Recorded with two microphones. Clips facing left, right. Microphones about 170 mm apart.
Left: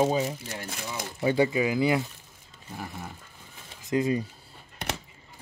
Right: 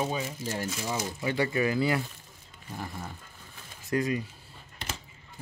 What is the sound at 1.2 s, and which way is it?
Speech, 20° left (ahead or behind).